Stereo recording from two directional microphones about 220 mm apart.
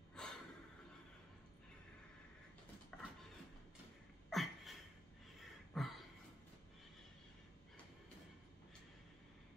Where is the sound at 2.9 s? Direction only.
5° left (ahead or behind).